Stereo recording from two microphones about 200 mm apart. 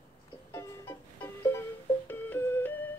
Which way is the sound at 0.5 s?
10° left (ahead or behind).